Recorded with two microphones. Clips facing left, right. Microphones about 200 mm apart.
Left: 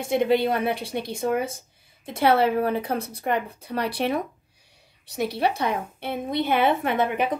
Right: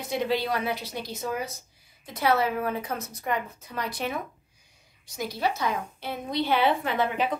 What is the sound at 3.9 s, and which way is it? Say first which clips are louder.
Speech: left 7 dB; 65° left (ahead or behind).